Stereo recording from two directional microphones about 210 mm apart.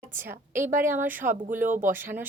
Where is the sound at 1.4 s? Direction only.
40° right (ahead or behind).